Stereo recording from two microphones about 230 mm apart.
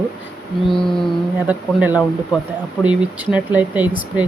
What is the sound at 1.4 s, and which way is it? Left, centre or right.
Speech, centre.